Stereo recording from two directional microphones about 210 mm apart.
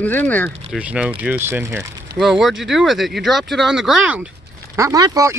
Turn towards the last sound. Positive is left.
turn(degrees=-15)  # may be behind; listen again after turning